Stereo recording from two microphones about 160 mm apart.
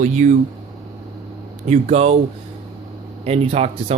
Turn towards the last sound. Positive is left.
turn(degrees=-40)  # may be behind; listen again after turning